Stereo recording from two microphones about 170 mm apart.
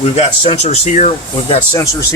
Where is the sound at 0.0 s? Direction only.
40° left (ahead or behind).